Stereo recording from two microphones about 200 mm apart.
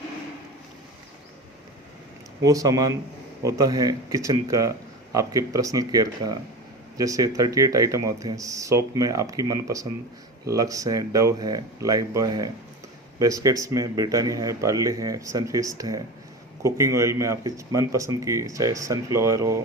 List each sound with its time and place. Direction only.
2.4 s speech: 15° right (ahead or behind)